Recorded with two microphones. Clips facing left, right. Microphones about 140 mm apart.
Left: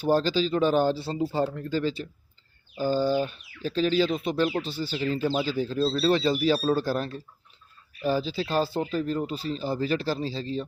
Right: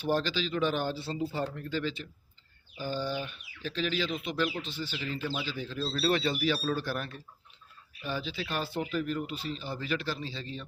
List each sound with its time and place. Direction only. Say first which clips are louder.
0.0 s speech: left 7 dB; 35° left (ahead or behind)